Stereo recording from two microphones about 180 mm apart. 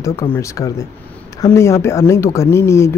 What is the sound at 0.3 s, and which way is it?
Speech, 15° left (ahead or behind).